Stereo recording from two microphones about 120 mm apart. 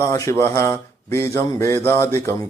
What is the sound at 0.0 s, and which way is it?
Speech, 25° left (ahead or behind).